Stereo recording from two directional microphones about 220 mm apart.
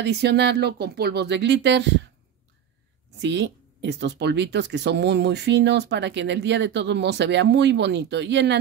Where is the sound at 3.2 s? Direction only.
55° right (ahead or behind).